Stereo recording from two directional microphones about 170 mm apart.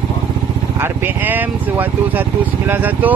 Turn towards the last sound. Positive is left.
turn(degrees=-10)  # may be behind; listen again after turning